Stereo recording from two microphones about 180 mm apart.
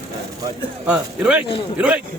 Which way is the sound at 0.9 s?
5° right (ahead or behind).